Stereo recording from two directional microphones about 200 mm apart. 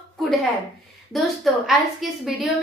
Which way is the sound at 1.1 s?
Centre (ahead or behind).